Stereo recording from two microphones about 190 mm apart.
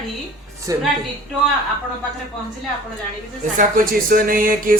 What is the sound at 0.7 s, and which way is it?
Speech, 15° right (ahead or behind).